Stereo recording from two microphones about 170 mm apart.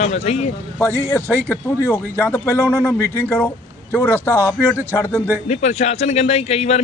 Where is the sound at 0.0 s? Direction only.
40° left (ahead or behind).